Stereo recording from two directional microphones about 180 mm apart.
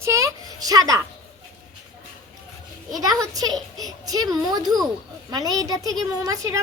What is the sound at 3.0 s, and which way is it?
A child's voice, 20° right (ahead or behind).